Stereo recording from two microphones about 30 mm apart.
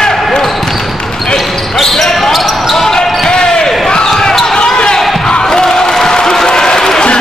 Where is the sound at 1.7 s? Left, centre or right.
Centre.